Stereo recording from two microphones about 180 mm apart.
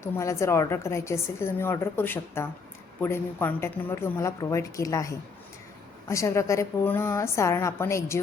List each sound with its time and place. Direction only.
0.0 s a woman's voice: 15° left (ahead or behind)